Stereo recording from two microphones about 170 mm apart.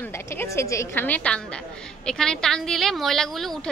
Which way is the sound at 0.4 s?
15° left (ahead or behind).